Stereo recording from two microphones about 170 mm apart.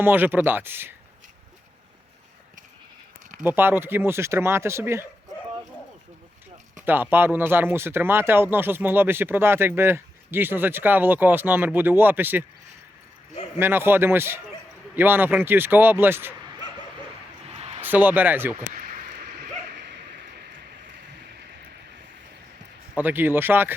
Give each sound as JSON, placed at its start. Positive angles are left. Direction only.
{"t": 0.0, "sound": "speech", "side_deg": -10}
{"t": 3.4, "sound": "speech", "side_deg": -10}
{"t": 6.8, "sound": "speech", "side_deg": -10}
{"t": 13.6, "sound": "speech", "side_deg": -15}
{"t": 17.5, "sound": "a sound", "side_deg": -35}
{"t": 17.7, "sound": "speech", "side_deg": -10}
{"t": 18.7, "sound": "a sound", "side_deg": -55}
{"t": 23.0, "sound": "speech", "side_deg": -10}